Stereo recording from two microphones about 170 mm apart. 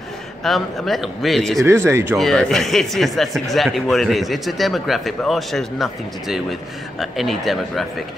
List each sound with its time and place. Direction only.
0.4 s speech: centre (ahead or behind)
1.6 s speech: 15° right (ahead or behind)
2.1 s speech: centre (ahead or behind)